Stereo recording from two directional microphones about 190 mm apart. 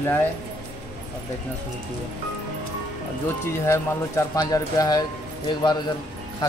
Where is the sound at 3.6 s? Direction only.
15° left (ahead or behind).